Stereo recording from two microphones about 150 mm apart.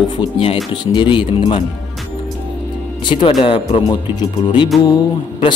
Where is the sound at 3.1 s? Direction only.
30° left (ahead or behind).